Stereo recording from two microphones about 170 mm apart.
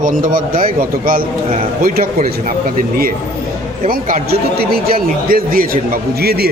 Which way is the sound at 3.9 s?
55° right (ahead or behind).